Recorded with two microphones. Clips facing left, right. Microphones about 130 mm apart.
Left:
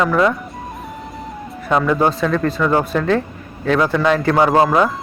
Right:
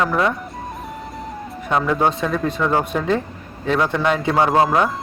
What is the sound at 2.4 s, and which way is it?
Speech, 20° right (ahead or behind).